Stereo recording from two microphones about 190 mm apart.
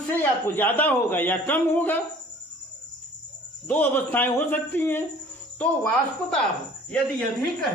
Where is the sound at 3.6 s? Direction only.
10° left (ahead or behind).